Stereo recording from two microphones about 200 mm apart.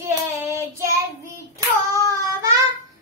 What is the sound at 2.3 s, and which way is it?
Child singing, 15° right (ahead or behind).